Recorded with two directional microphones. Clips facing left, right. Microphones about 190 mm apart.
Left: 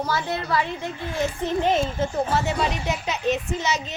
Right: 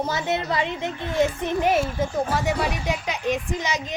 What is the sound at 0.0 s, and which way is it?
A woman's voice, 20° right (ahead or behind).